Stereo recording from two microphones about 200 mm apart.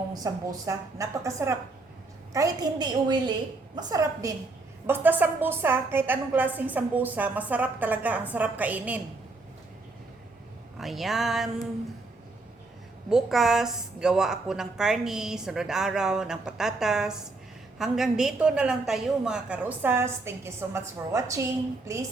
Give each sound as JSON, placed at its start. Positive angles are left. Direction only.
{"t": 0.1, "sound": "a woman's voice", "side_deg": -20}
{"t": 10.8, "sound": "a woman's voice", "side_deg": 0}
{"t": 13.1, "sound": "a woman's voice", "side_deg": 0}